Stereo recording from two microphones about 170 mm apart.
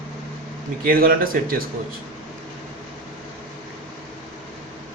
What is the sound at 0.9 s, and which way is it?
Speech, 60° right (ahead or behind).